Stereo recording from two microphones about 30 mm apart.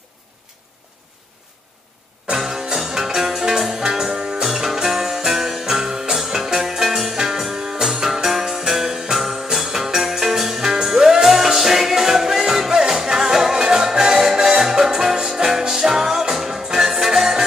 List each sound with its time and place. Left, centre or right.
2.3 s music: centre
4.4 s music: centre
9.2 s jingle bell: centre
13.0 s music: centre